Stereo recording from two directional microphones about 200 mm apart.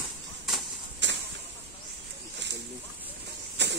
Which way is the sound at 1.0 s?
65° right (ahead or behind).